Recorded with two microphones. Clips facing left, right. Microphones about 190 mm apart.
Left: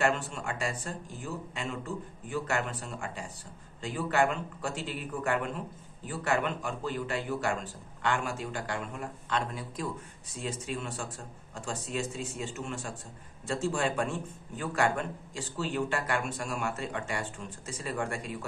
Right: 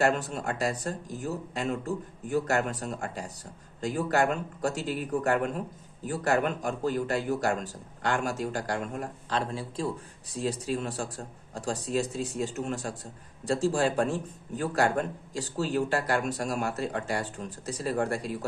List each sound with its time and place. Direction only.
0.0 s a man's voice: 40° right (ahead or behind)